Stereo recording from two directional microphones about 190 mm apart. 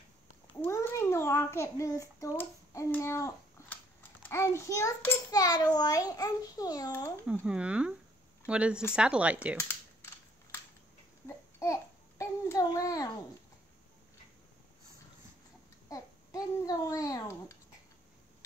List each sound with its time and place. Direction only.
0.6 s a child's voice: 15° left (ahead or behind)
7.4 s speech: 5° right (ahead or behind)
11.2 s babbling: 15° left (ahead or behind)
15.9 s speech: 20° left (ahead or behind)